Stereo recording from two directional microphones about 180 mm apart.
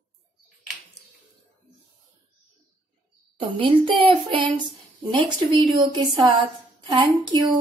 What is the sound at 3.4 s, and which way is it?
Speech, 30° right (ahead or behind).